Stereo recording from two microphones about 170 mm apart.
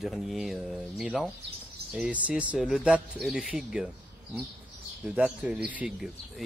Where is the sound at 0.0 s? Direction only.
Centre (ahead or behind).